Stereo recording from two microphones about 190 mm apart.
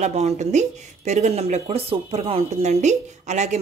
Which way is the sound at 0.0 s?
35° right (ahead or behind).